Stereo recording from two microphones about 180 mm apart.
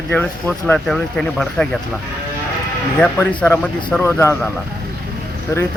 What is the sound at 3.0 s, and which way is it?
Speech, 10° left (ahead or behind).